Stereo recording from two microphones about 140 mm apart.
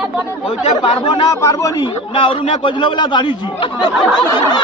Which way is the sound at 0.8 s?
35° left (ahead or behind).